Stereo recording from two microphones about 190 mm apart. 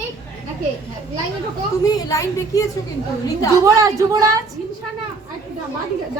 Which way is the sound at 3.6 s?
15° right (ahead or behind).